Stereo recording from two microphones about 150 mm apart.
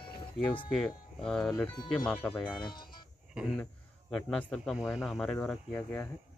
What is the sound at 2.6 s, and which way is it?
Speech, 30° left (ahead or behind).